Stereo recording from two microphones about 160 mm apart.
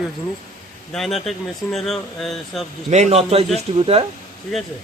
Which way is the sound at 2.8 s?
45° right (ahead or behind).